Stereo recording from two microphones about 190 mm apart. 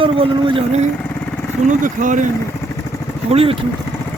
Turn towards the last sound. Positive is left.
turn(degrees=-30)  # may be behind; listen again after turning